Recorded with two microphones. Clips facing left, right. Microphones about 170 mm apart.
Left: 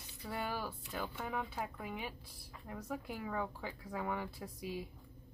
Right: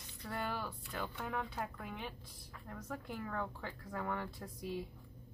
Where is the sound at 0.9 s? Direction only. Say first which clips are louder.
Even; 5° left (ahead or behind).